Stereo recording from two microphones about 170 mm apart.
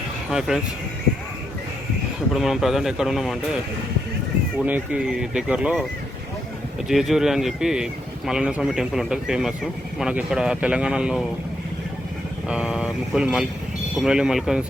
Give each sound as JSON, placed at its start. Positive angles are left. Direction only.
{"t": 0.3, "sound": "speech", "side_deg": -5}
{"t": 2.3, "sound": "speech", "side_deg": 0}
{"t": 4.6, "sound": "speech", "side_deg": -5}
{"t": 6.8, "sound": "speech", "side_deg": 0}
{"t": 12.5, "sound": "speech", "side_deg": -5}